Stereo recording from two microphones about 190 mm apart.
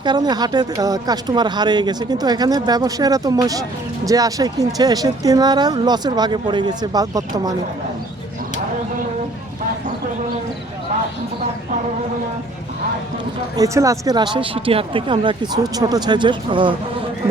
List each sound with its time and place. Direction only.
0.0 s speech: 20° right (ahead or behind)
13.6 s speech: 15° right (ahead or behind)